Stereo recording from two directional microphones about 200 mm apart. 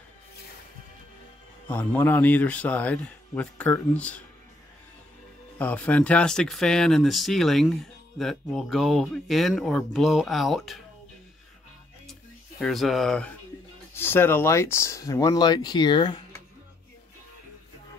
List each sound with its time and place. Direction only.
1.7 s speech: 10° left (ahead or behind)
5.6 s speech: 5° left (ahead or behind)
12.1 s a sound: centre (ahead or behind)
13.9 s speech: 10° left (ahead or behind)